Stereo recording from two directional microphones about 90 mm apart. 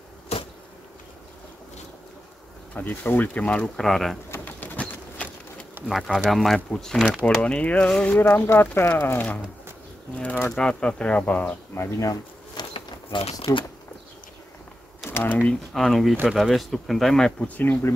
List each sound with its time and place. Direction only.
2.7 s speech: 20° left (ahead or behind); by 4.2 s 5° left (ahead or behind)
4.3 s bird: 20° left (ahead or behind)
5.9 s speech: centre (ahead or behind); by 11.5 s 15° left (ahead or behind)
11.7 s speech: 30° left (ahead or behind)
12.7 s a sound: 85° left
15.0 s typewriter: 25° left (ahead or behind)
15.7 s speech: centre (ahead or behind)
17.6 s speech: 20° left (ahead or behind)